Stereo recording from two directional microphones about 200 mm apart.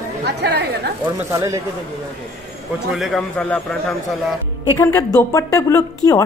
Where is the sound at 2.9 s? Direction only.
Centre (ahead or behind).